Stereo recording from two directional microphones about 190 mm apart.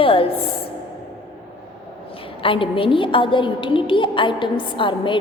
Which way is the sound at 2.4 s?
25° left (ahead or behind).